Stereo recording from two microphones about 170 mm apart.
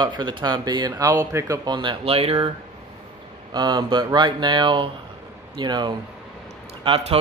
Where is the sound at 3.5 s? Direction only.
25° right (ahead or behind).